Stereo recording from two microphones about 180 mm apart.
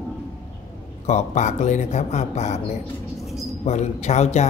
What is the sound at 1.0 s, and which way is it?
A man's voice, 40° left (ahead or behind).